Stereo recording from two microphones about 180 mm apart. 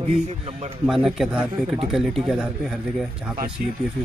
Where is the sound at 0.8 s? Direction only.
Centre (ahead or behind).